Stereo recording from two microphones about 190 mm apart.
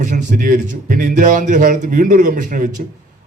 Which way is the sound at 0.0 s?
45° right (ahead or behind).